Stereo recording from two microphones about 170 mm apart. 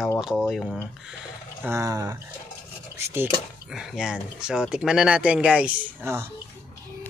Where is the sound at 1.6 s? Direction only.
20° right (ahead or behind).